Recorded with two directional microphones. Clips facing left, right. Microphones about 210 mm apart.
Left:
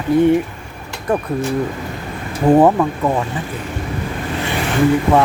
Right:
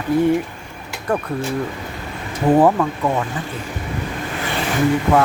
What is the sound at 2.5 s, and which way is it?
Speech, 15° left (ahead or behind).